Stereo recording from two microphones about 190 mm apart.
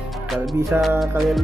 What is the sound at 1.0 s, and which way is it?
Music, centre (ahead or behind).